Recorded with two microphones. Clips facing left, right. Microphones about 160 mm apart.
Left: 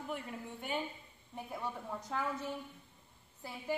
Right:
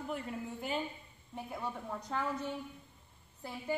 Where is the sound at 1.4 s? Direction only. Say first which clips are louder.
Right 1 dB; centre (ahead or behind).